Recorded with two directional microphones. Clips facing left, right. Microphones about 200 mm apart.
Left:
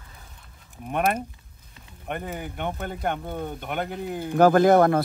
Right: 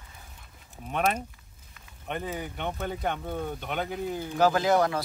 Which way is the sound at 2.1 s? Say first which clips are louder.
Left 1 dB; 10° left (ahead or behind).